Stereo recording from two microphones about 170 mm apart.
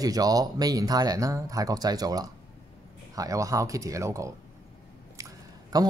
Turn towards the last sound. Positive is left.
turn(degrees=-25)  # may be behind; listen again after turning